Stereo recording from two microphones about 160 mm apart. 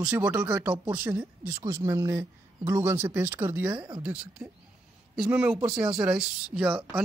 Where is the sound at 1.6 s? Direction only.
20° right (ahead or behind).